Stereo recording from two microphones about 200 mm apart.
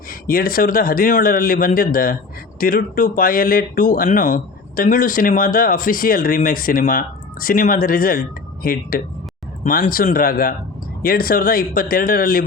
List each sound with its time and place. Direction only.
0.1 s speech: 45° left (ahead or behind)